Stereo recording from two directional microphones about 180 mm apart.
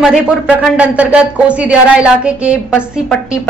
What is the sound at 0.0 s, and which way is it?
A woman's voice, 5° right (ahead or behind).